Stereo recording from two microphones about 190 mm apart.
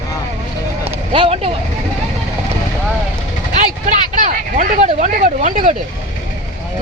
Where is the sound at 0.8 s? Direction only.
30° right (ahead or behind).